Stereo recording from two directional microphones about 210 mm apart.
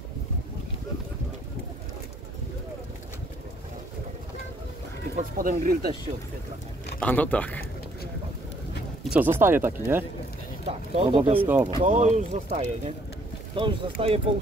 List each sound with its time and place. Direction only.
5.1 s speech: 40° right (ahead or behind)
7.0 s speech: 5° left (ahead or behind)
9.0 s speech: 5° right (ahead or behind)
11.0 s speech: 25° right (ahead or behind)
11.3 s speech: 10° right (ahead or behind)
11.8 s speech: 35° right (ahead or behind)